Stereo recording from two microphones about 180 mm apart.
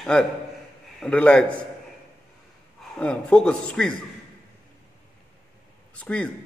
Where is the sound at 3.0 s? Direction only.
5° left (ahead or behind).